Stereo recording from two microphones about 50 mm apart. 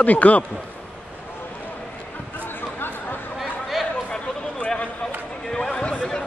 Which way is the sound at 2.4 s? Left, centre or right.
Left.